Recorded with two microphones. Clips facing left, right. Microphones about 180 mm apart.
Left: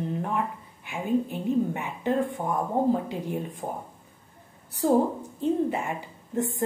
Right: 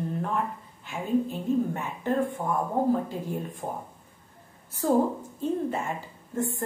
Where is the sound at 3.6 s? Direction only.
5° left (ahead or behind).